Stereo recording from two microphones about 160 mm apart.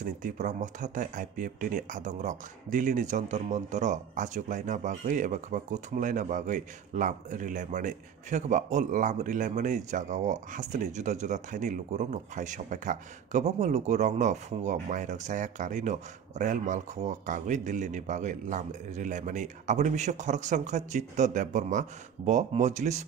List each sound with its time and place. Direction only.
0.2 s speech: 50° right (ahead or behind)